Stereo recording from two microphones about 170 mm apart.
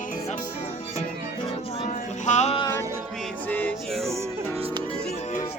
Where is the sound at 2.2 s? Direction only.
45° left (ahead or behind).